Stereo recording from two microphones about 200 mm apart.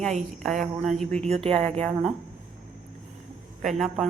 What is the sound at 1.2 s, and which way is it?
Speech, 30° right (ahead or behind).